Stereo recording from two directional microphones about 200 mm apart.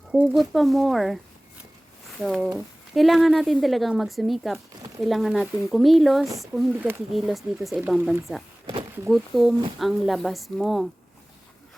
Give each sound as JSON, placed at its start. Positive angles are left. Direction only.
{"t": 0.1, "sound": "speech", "side_deg": -5}
{"t": 2.2, "sound": "speech", "side_deg": 0}